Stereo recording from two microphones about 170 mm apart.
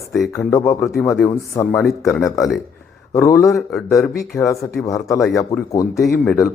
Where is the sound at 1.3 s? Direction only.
15° left (ahead or behind).